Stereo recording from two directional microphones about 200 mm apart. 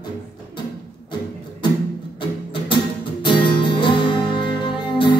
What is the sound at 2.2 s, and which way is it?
Music, 25° left (ahead or behind).